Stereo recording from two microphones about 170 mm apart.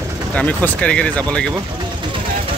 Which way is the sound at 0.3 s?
10° left (ahead or behind).